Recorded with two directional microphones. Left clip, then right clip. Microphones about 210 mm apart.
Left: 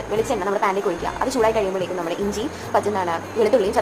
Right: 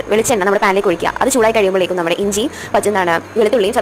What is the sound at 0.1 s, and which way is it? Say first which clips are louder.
A woman's voice: right 8 dB; 30° right (ahead or behind).